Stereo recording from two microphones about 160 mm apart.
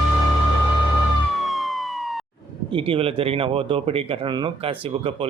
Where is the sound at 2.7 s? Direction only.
35° right (ahead or behind).